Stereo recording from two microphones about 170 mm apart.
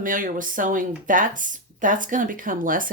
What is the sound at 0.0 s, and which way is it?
Speech, 50° right (ahead or behind).